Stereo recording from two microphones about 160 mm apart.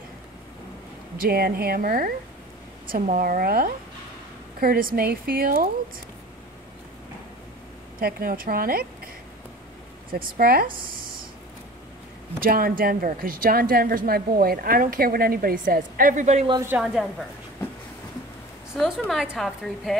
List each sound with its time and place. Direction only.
1.1 s a woman's voice: 70° right (ahead or behind)
8.0 s a woman's voice: 65° right (ahead or behind)
10.1 s a woman's voice: 65° right (ahead or behind)
12.4 s a woman's voice: 65° right (ahead or behind); by 16.4 s 50° right (ahead or behind)
16.6 s a woman's voice: 5° right (ahead or behind)
18.8 s a woman's voice: centre (ahead or behind)